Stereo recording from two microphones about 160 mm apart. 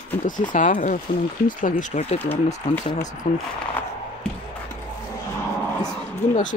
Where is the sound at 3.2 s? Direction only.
45° left (ahead or behind).